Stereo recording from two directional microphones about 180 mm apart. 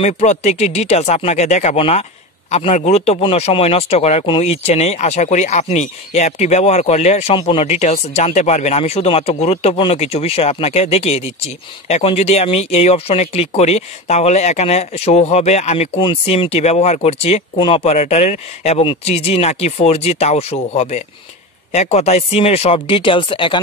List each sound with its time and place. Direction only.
0.0 s speech: 40° left (ahead or behind)